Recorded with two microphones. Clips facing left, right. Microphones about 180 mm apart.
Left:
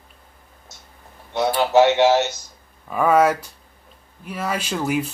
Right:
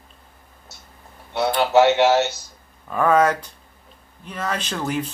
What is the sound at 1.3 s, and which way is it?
Speech, 20° left (ahead or behind).